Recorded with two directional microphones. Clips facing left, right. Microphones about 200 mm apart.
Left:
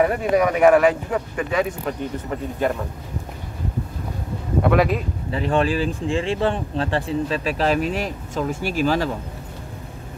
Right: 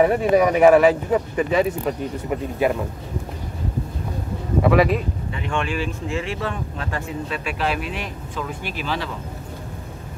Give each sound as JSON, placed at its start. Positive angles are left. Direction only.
{"t": 0.0, "sound": "speech", "side_deg": 0}
{"t": 4.6, "sound": "speech", "side_deg": 0}
{"t": 5.3, "sound": "speech", "side_deg": 35}